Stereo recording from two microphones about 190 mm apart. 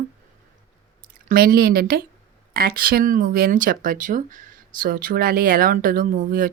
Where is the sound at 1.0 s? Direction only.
50° right (ahead or behind).